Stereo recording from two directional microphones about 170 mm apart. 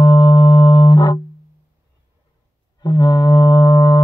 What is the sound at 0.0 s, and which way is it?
Music, 25° left (ahead or behind).